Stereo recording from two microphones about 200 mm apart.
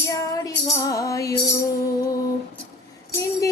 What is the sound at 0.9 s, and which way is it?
Music, 15° left (ahead or behind).